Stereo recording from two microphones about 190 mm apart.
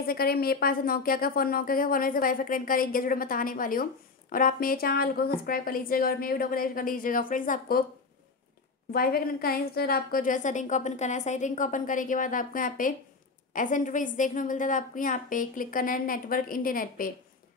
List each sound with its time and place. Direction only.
0.0 s a woman's voice: 50° left (ahead or behind)
8.9 s a woman's voice: 50° left (ahead or behind)